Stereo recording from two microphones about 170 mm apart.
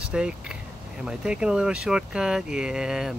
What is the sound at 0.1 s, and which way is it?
Speech, 5° right (ahead or behind).